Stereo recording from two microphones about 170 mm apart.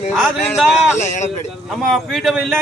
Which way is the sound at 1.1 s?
45° left (ahead or behind).